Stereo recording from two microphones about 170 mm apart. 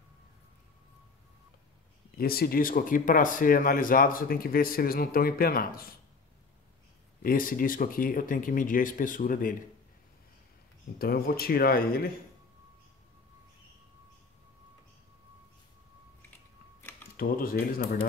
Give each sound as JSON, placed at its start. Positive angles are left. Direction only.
{"t": 2.1, "sound": "speech", "side_deg": 65}
{"t": 7.2, "sound": "speech", "side_deg": 55}
{"t": 11.0, "sound": "speech", "side_deg": 65}
{"t": 17.2, "sound": "speech", "side_deg": 60}